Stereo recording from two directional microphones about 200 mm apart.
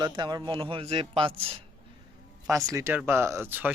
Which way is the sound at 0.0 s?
20° right (ahead or behind).